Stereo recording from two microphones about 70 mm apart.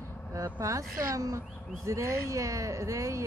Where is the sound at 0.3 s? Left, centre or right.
Right.